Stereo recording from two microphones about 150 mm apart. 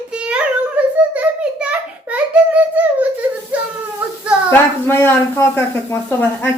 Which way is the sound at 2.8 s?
10° right (ahead or behind).